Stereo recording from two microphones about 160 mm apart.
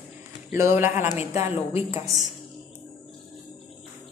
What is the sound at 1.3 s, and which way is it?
Speech, 40° left (ahead or behind).